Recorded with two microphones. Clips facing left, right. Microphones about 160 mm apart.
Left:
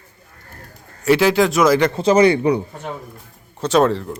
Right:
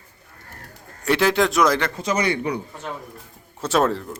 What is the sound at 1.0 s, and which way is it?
Speech, 5° left (ahead or behind).